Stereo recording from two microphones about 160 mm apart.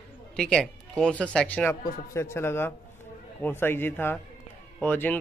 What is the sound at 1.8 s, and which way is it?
Speech, 60° left (ahead or behind).